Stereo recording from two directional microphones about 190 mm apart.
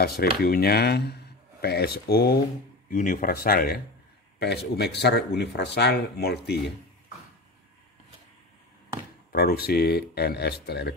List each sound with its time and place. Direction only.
0.2 s speech: 55° left (ahead or behind)
2.9 s speech: 45° left (ahead or behind); by 6.6 s 60° left (ahead or behind)
9.3 s speech: 55° left (ahead or behind)